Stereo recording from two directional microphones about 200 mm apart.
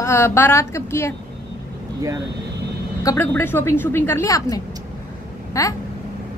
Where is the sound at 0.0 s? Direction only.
15° left (ahead or behind).